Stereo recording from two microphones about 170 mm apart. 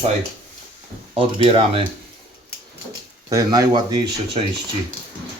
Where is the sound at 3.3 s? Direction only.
20° right (ahead or behind).